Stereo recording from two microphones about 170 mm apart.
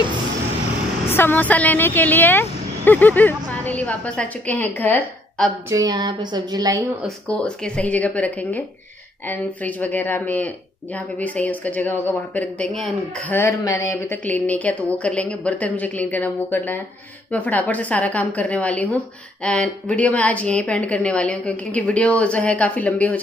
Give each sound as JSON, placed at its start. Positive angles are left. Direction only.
{"t": 1.0, "sound": "speech", "side_deg": 10}
{"t": 5.7, "sound": "music", "side_deg": -20}
{"t": 7.2, "sound": "speech", "side_deg": 5}
{"t": 9.3, "sound": "speech", "side_deg": 10}